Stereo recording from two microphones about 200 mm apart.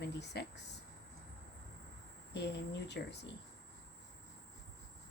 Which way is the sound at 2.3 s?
60° left (ahead or behind).